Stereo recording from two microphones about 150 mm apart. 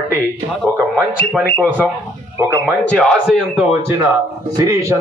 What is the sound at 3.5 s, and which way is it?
A man's voice, 15° right (ahead or behind).